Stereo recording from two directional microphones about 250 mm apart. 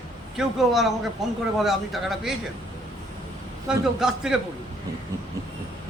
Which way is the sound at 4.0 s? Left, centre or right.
Centre.